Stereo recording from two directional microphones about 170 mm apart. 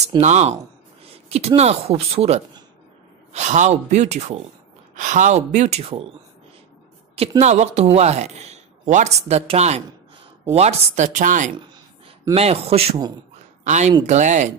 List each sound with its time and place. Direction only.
0.2 s speech: 40° right (ahead or behind)
7.2 s speech: 40° right (ahead or behind)
12.4 s speech: 35° right (ahead or behind)